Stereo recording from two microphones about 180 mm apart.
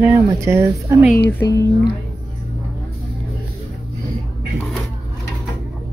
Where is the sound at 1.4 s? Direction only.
15° left (ahead or behind).